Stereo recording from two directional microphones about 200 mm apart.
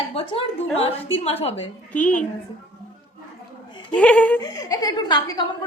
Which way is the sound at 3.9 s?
5° left (ahead or behind).